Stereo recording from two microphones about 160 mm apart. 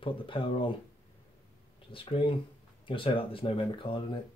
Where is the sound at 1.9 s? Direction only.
35° left (ahead or behind).